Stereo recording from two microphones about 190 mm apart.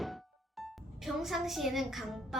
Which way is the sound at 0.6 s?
Centre (ahead or behind).